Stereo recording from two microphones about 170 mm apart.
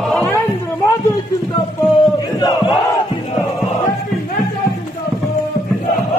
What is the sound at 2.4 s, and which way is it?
Crowd, 25° left (ahead or behind).